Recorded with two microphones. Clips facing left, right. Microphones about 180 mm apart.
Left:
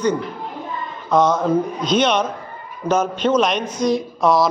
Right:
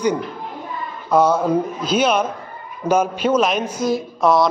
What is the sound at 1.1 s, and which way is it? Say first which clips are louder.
A man's voice: even; 10° right (ahead or behind).